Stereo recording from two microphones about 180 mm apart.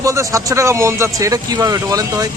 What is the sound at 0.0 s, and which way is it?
Speech, 15° right (ahead or behind).